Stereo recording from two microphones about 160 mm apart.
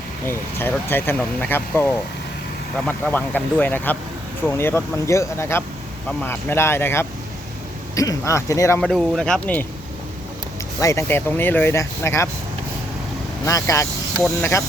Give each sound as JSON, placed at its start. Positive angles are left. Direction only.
{"t": 0.3, "sound": "speech", "side_deg": 15}
{"t": 8.8, "sound": "speech", "side_deg": 0}
{"t": 10.8, "sound": "speech", "side_deg": 20}
{"t": 13.4, "sound": "speech", "side_deg": 20}